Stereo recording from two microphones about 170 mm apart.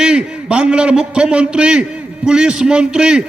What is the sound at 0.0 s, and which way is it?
A man's voice, 5° right (ahead or behind).